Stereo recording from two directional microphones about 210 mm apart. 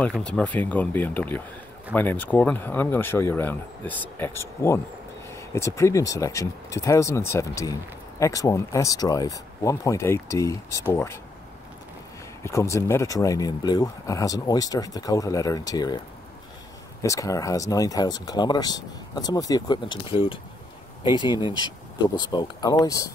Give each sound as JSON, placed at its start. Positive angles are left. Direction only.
{"t": 0.2, "sound": "speech", "side_deg": 5}
{"t": 12.4, "sound": "speech", "side_deg": 15}
{"t": 17.0, "sound": "speech", "side_deg": 15}